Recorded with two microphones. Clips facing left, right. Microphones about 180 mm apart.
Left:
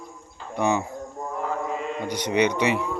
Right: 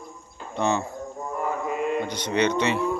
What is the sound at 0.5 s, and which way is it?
Speech, 15° left (ahead or behind).